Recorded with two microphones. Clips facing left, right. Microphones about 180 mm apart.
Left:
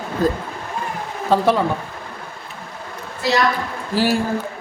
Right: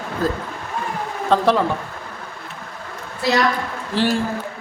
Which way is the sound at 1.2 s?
5° left (ahead or behind).